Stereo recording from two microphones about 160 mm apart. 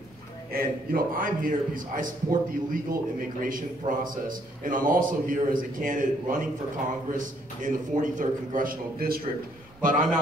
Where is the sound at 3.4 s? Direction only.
55° right (ahead or behind).